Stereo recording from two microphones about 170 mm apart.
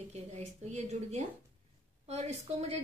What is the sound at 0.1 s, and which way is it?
A woman's voice, 40° right (ahead or behind).